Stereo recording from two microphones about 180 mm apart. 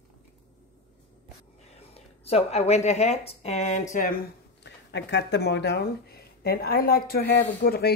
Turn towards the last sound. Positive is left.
turn(degrees=60)  # may be behind; listen again after turning